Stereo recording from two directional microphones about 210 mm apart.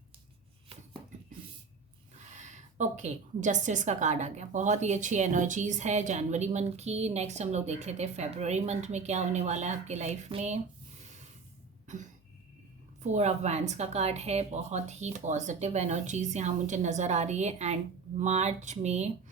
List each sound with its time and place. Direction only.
2.3 s a woman's voice: 35° right (ahead or behind)
13.0 s a woman's voice: 30° right (ahead or behind)